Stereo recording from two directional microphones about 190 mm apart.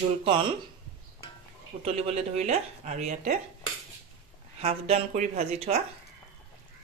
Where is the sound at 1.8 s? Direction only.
35° right (ahead or behind).